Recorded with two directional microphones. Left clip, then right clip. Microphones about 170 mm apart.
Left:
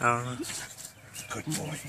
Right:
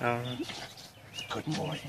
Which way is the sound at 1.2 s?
45° left (ahead or behind).